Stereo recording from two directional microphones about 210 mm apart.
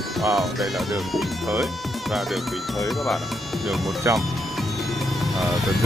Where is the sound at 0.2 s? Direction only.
Centre (ahead or behind).